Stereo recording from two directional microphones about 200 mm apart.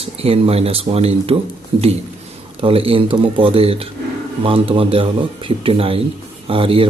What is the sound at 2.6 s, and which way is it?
Speech, 25° right (ahead or behind).